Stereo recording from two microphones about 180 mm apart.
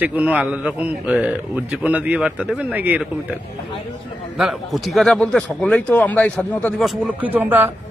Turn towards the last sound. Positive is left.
turn(degrees=-10)  # may be behind; listen again after turning